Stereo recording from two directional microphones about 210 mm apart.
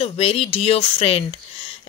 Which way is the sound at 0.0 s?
30° left (ahead or behind).